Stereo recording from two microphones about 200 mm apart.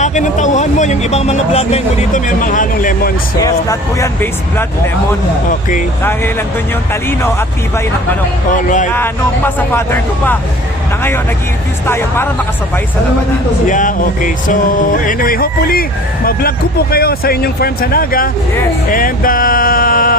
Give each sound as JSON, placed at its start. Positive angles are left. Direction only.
{"t": 0.0, "sound": "speech", "side_deg": 35}
{"t": 3.4, "sound": "speech", "side_deg": 15}
{"t": 6.0, "sound": "speech", "side_deg": 10}
{"t": 8.5, "sound": "speech", "side_deg": 40}
{"t": 8.9, "sound": "speech", "side_deg": 10}
{"t": 11.9, "sound": "speech", "side_deg": 10}
{"t": 13.7, "sound": "a sound", "side_deg": 40}